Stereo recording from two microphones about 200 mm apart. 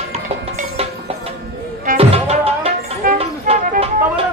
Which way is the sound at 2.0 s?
30° right (ahead or behind).